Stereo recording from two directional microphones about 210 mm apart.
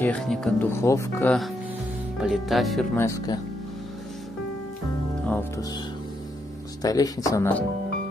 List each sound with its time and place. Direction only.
0.0 s speech: 5° left (ahead or behind)
2.1 s speech: centre (ahead or behind)
5.2 s speech: 10° left (ahead or behind)
6.8 s speech: 15° left (ahead or behind)